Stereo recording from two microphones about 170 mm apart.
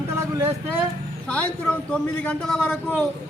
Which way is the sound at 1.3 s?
5° left (ahead or behind).